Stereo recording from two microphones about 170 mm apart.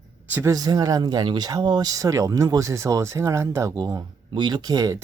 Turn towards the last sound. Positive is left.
turn(degrees=-20)  # may be behind; listen again after turning